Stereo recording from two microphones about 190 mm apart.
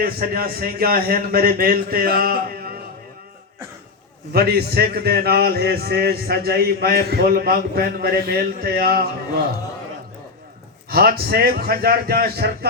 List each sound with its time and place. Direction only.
0.0 s a man's voice: 50° right (ahead or behind)
4.3 s a man's voice: 55° right (ahead or behind)
10.8 s a man's voice: 55° right (ahead or behind)